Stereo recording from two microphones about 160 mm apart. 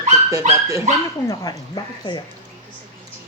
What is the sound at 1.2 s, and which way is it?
Speech, 25° left (ahead or behind).